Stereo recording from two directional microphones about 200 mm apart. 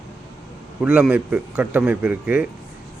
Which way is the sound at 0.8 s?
5° right (ahead or behind).